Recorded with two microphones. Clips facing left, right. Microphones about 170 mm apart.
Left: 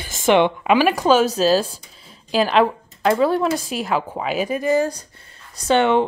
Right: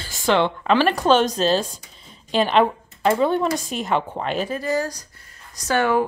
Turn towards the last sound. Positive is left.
turn(degrees=25)  # may be behind; listen again after turning